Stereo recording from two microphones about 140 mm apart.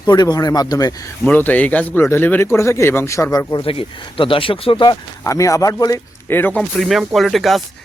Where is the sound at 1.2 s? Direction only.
10° left (ahead or behind); by 3.6 s 25° left (ahead or behind).